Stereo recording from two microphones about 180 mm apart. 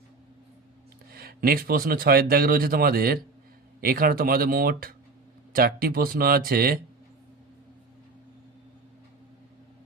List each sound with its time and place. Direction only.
1.1 s speech: 55° right (ahead or behind)